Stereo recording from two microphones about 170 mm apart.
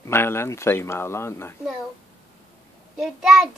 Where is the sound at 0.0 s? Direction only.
15° left (ahead or behind).